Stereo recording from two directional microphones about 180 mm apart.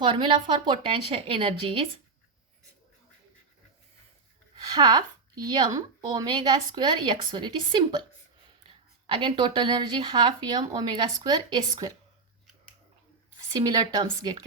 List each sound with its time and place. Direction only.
0.0 s speech: 25° right (ahead or behind)
4.5 s a woman's voice: 25° right (ahead or behind)
9.0 s speech: 25° right (ahead or behind)
13.5 s speech: 20° right (ahead or behind)